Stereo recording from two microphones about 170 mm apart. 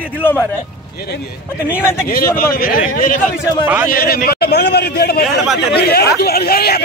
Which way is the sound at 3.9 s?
60° left (ahead or behind).